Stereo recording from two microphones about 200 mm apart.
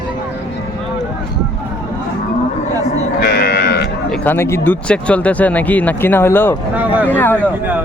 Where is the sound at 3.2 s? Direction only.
50° left (ahead or behind).